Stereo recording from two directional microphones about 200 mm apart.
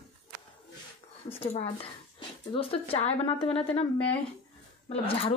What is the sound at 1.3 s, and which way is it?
Speech, 30° left (ahead or behind).